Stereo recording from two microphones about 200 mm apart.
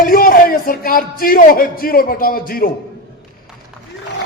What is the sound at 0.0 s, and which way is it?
Speech, 45° left (ahead or behind).